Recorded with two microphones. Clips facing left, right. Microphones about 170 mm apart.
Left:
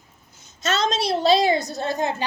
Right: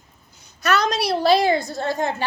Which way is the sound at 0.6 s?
25° left (ahead or behind).